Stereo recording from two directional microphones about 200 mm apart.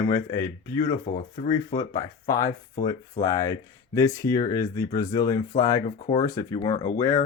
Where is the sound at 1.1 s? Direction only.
35° left (ahead or behind).